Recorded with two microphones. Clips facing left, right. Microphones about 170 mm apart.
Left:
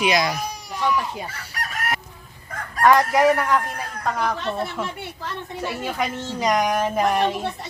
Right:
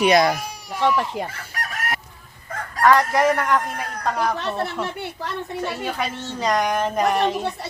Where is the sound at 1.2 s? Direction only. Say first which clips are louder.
Right 5 dB; 70° right (ahead or behind).